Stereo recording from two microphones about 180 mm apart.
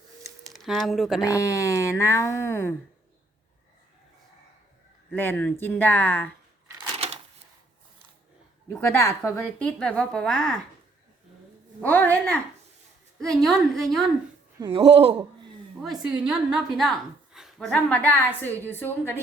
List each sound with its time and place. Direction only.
0.4 s speech: centre (ahead or behind)
1.3 s a woman's voice: 20° left (ahead or behind)
5.1 s a woman's voice: 10° left (ahead or behind)
6.9 s a sound: 35° right (ahead or behind)
8.7 s a woman's voice: 15° left (ahead or behind)
9.6 s a woman's voice: 5° left (ahead or behind)
11.9 s a woman's voice: 10° left (ahead or behind)
14.6 s speech: 30° right (ahead or behind)
15.8 s a woman's voice: 5° right (ahead or behind)